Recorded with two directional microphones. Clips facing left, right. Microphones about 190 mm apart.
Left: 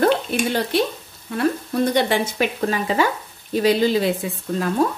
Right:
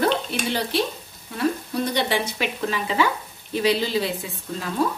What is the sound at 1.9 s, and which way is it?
A woman's voice, 50° left (ahead or behind).